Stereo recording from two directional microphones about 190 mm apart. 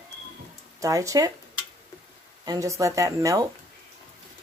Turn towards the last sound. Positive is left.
turn(degrees=-15)  # may be behind; listen again after turning